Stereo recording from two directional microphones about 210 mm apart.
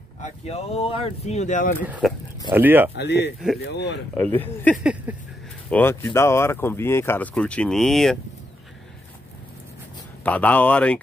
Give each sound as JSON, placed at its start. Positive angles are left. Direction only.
{"t": 0.2, "sound": "speech", "side_deg": 30}
{"t": 1.8, "sound": "speech", "side_deg": -5}
{"t": 3.0, "sound": "speech", "side_deg": 55}
{"t": 4.1, "sound": "speech", "side_deg": 10}
{"t": 5.1, "sound": "speech", "side_deg": -5}
{"t": 5.7, "sound": "speech", "side_deg": 10}
{"t": 10.2, "sound": "speech", "side_deg": 5}